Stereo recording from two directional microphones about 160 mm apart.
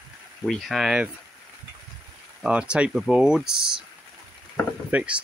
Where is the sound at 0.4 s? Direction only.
Centre (ahead or behind).